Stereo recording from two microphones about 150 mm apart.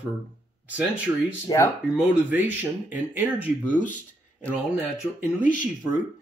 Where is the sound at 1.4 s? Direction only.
20° left (ahead or behind).